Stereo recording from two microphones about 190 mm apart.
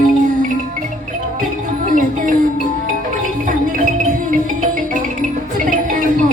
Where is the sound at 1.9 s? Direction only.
45° right (ahead or behind).